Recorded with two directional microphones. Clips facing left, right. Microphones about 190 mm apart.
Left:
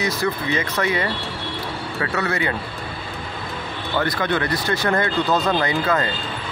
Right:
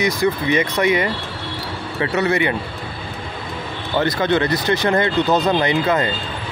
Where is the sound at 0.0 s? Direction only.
15° right (ahead or behind).